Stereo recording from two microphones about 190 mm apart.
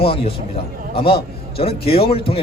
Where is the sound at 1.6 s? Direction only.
30° left (ahead or behind).